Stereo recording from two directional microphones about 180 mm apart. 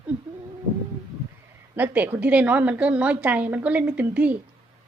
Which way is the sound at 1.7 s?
10° right (ahead or behind).